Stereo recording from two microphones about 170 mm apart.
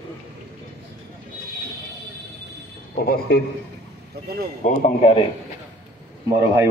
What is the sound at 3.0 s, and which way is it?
Speech, 65° left (ahead or behind).